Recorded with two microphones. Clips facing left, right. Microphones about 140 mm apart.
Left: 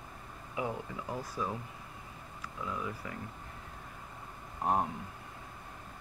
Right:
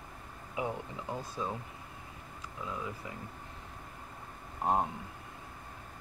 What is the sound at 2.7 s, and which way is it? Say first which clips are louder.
Speech: left 1 dB; 20° right (ahead or behind).